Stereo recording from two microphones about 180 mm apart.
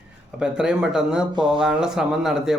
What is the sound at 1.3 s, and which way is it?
Speech, 25° right (ahead or behind).